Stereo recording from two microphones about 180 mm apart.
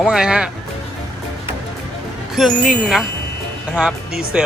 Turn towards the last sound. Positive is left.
turn(degrees=-5)  # may be behind; listen again after turning